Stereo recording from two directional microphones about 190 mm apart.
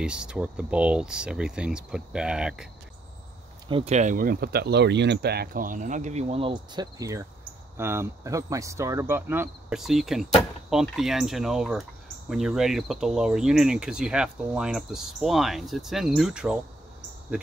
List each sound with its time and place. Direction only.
0.0 s speech: 5° right (ahead or behind)
3.6 s speech: 30° right (ahead or behind); by 9.8 s 10° right (ahead or behind)
9.8 s speech: centre (ahead or behind)